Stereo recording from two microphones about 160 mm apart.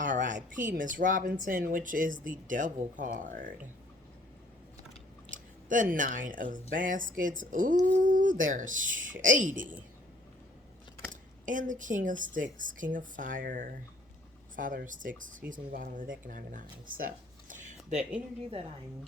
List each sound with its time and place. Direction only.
0.0 s speech: 55° right (ahead or behind)
5.3 s speech: 55° right (ahead or behind)
11.1 s speech: 55° right (ahead or behind)
17.0 s a sound: 55° right (ahead or behind)